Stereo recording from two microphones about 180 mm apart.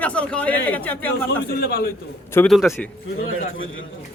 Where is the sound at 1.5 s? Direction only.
60° left (ahead or behind).